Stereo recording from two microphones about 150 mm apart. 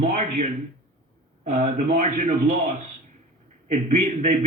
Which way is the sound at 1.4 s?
50° right (ahead or behind).